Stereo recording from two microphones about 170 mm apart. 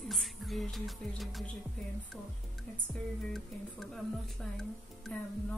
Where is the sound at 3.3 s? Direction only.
Centre (ahead or behind).